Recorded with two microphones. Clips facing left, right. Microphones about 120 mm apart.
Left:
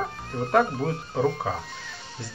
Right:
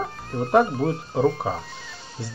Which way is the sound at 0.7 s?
Centre (ahead or behind).